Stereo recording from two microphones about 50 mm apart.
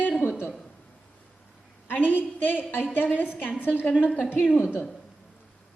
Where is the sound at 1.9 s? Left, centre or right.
Left.